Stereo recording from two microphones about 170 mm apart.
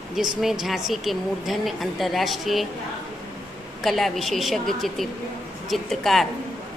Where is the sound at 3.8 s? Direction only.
Centre (ahead or behind).